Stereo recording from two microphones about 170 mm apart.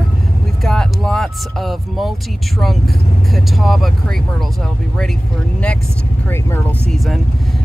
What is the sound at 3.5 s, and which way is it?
Speech, centre (ahead or behind).